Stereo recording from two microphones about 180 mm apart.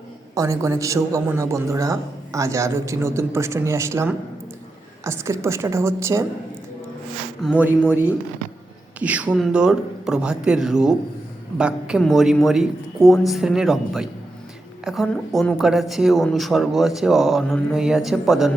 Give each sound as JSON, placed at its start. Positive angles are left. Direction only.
{"t": 0.3, "sound": "a man's voice", "side_deg": -15}
{"t": 7.4, "sound": "a man's voice", "side_deg": -5}